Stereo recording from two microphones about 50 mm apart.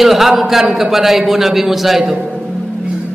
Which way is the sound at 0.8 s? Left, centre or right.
Centre.